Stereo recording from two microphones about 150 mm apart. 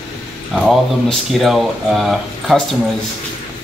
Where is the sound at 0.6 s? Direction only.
Centre (ahead or behind).